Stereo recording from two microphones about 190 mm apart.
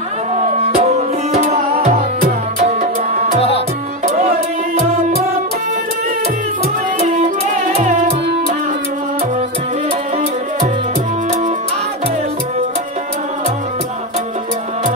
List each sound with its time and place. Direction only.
0.4 s music: 35° right (ahead or behind)
7.0 s music: 40° right (ahead or behind)